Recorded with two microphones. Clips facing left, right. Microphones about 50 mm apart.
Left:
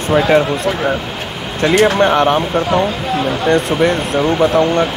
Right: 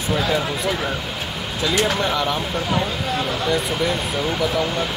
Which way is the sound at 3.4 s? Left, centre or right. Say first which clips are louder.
Left 10 dB; left.